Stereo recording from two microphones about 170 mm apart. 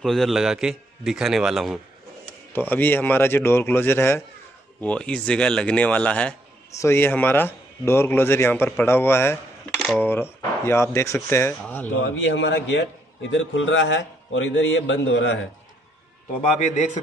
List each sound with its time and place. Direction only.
0.0 s a man's voice: centre (ahead or behind)
2.5 s speech: 10° left (ahead or behind)
12.0 s a man's voice: 90° left
16.5 s a man's voice: 45° left (ahead or behind)